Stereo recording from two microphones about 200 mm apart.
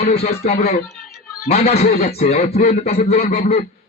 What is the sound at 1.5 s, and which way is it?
Speech, 30° left (ahead or behind).